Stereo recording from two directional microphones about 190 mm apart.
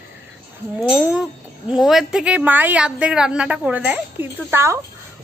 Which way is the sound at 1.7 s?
Centre (ahead or behind).